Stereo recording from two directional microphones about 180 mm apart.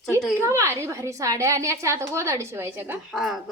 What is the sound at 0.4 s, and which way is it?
A woman's voice, 15° right (ahead or behind).